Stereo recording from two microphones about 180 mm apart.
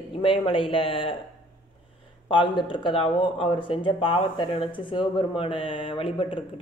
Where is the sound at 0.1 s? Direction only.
30° left (ahead or behind).